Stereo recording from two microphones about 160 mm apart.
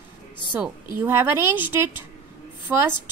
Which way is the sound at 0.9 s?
15° right (ahead or behind).